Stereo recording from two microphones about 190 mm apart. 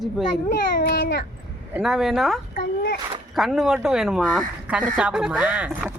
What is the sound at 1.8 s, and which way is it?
Speech, centre (ahead or behind).